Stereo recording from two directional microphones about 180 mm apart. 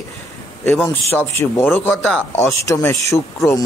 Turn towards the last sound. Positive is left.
turn(degrees=15)  # may be behind; listen again after turning